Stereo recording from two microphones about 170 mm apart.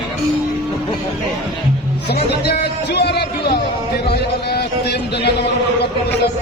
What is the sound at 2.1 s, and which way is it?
Music, 75° left (ahead or behind).